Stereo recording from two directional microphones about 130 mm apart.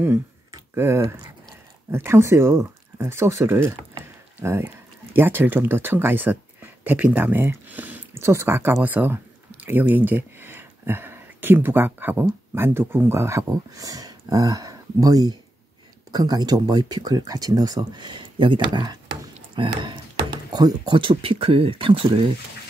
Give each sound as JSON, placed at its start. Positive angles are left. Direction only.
{"t": 0.7, "sound": "speech", "side_deg": -20}
{"t": 4.0, "sound": "a sound", "side_deg": -20}
{"t": 5.1, "sound": "speech", "side_deg": -15}